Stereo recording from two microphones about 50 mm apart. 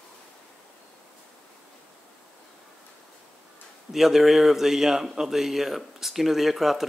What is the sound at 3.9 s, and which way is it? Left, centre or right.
Speech, centre.